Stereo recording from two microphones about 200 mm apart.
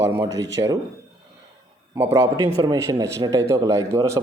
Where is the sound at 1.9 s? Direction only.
10° right (ahead or behind).